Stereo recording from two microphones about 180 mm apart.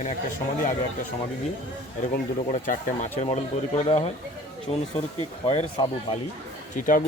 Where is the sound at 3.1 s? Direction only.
35° left (ahead or behind).